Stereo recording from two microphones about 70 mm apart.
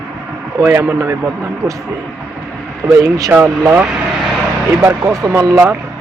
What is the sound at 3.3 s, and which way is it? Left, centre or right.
Speech, right.